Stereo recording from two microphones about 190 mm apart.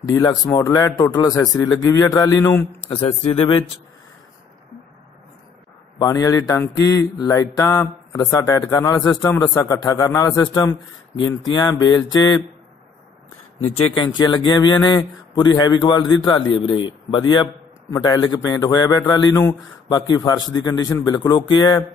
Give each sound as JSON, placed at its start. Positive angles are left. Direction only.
{"t": 0.1, "sound": "speech", "side_deg": 20}
{"t": 2.9, "sound": "speech", "side_deg": 30}
{"t": 5.9, "sound": "speech", "side_deg": 20}
{"t": 13.7, "sound": "speech", "side_deg": 25}